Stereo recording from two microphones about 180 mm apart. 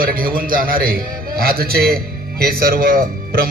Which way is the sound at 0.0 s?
50° right (ahead or behind).